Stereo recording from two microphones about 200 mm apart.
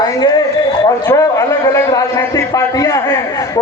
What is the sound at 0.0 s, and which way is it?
A man's voice, 20° left (ahead or behind).